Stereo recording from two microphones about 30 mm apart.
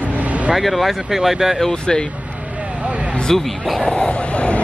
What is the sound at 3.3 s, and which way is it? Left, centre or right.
Speech, centre.